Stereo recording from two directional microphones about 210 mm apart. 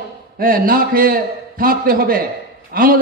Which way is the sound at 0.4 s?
45° right (ahead or behind).